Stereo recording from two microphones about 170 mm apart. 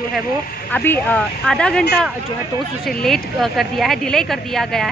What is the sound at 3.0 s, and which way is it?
A woman's voice, centre (ahead or behind).